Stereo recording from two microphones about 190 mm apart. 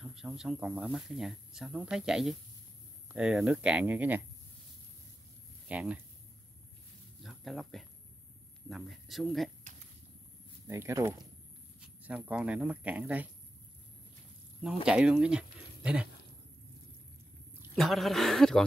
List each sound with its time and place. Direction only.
0.0 s speech: 5° right (ahead or behind)
5.7 s speech: 5° right (ahead or behind)
7.2 s speech: centre (ahead or behind)
10.7 s speech: 15° right (ahead or behind)
11.8 s speech: 5° right (ahead or behind)
14.6 s speech: 5° right (ahead or behind)
17.7 s speech: centre (ahead or behind)